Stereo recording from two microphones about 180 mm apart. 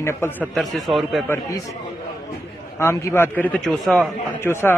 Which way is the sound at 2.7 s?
15° left (ahead or behind).